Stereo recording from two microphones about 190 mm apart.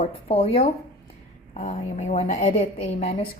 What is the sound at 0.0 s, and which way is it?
A woman's voice, 30° left (ahead or behind).